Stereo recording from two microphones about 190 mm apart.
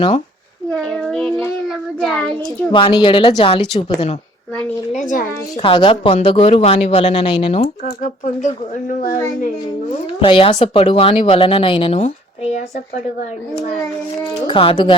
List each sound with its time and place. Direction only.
0.8 s child singing: 5° left (ahead or behind)
2.4 s speech: 25° left (ahead or behind)
4.9 s a child's voice: 40° left (ahead or behind)
5.6 s speech: 25° left (ahead or behind)
7.9 s speech: 40° left (ahead or behind)
10.2 s speech: 25° left (ahead or behind)
14.4 s speech: 30° left (ahead or behind)